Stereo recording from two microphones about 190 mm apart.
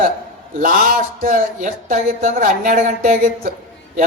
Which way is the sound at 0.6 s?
50° right (ahead or behind).